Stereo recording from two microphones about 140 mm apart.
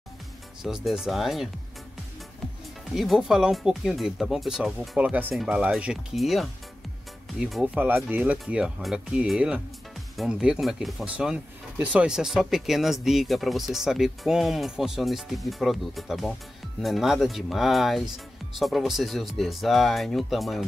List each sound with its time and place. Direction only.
0.6 s speech: 5° right (ahead or behind)
2.9 s speech: centre (ahead or behind)
7.6 s speech: 10° right (ahead or behind)